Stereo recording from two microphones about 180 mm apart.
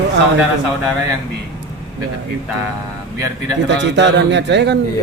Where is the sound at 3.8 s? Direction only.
80° right.